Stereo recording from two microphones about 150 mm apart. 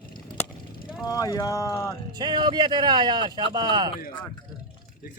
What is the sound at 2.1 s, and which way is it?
Speech, 30° right (ahead or behind).